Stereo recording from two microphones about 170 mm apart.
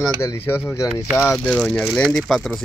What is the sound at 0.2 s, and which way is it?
Speech, 15° left (ahead or behind).